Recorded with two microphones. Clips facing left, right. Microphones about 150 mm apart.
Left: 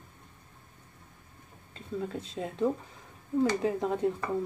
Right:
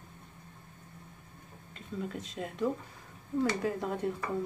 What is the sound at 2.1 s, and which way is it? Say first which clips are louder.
Speech: left 3 dB; 30° left (ahead or behind).